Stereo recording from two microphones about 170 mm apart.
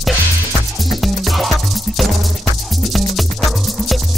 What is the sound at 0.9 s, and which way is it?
Music, centre (ahead or behind).